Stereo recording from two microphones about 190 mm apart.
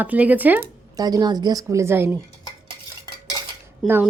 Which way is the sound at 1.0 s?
20° right (ahead or behind).